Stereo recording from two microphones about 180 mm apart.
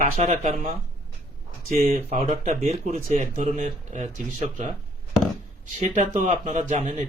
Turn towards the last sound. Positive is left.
turn(degrees=-40)  # may be behind; listen again after turning